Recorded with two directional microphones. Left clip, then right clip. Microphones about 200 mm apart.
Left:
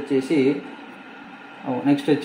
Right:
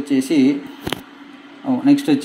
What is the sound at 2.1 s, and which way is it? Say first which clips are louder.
Speech: right 2 dB; 35° right (ahead or behind).